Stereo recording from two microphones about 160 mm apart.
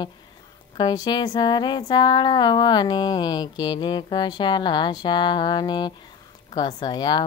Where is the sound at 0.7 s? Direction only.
25° left (ahead or behind).